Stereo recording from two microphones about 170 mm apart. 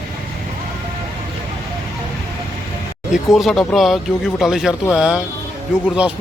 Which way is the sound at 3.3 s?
Centre (ahead or behind).